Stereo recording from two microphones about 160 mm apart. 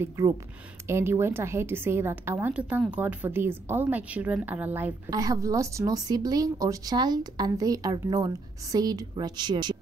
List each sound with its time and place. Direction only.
0.2 s a woman's voice: 15° right (ahead or behind)
5.1 s a woman's voice: 20° right (ahead or behind)